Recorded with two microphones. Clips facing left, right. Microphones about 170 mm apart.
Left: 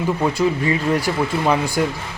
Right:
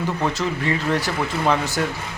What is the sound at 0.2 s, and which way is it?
Speech, 10° left (ahead or behind).